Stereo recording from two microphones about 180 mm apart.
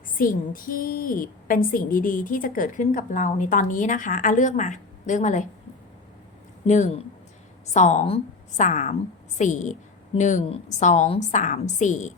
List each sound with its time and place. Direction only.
0.2 s a woman's voice: 50° left (ahead or behind)
6.7 s a woman's voice: 40° left (ahead or behind)